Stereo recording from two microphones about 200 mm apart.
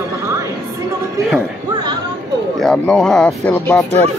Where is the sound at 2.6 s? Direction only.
5° left (ahead or behind).